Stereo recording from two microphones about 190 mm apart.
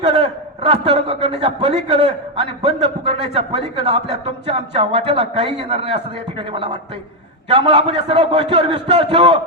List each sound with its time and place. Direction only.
0.0 s a man's voice: 30° right (ahead or behind)